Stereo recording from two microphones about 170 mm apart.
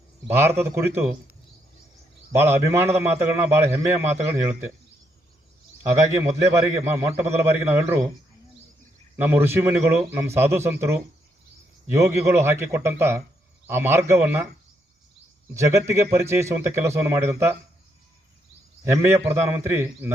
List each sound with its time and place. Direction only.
0.3 s a man's voice: 15° right (ahead or behind)
2.3 s a man's voice: 15° right (ahead or behind)
6.5 s a man's voice: 15° right (ahead or behind)
9.2 s a man's voice: 10° right (ahead or behind)
15.5 s a man's voice: 15° right (ahead or behind)
18.9 s a man's voice: 15° right (ahead or behind)